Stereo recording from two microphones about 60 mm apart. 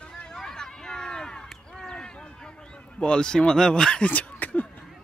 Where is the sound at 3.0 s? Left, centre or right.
Centre.